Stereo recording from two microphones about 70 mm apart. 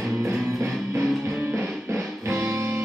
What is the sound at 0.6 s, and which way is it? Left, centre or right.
Music, right.